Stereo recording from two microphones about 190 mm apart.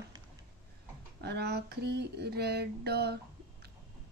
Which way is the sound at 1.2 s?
60° right (ahead or behind).